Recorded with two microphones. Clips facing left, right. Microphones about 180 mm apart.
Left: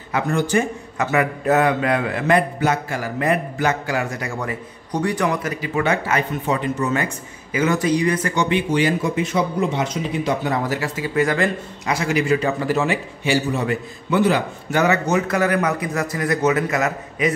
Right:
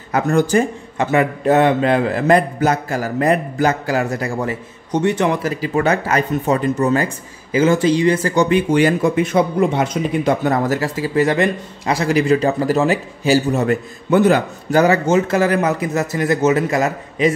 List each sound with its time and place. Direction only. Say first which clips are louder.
0.1 s a man's voice: right 4 dB; 45° right (ahead or behind)
11.1 s speech: right 3 dB; 25° right (ahead or behind)
11.9 s a man's voice: right 4 dB; 35° right (ahead or behind)